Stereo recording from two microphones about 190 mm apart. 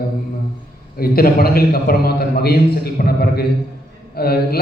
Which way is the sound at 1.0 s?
50° left (ahead or behind).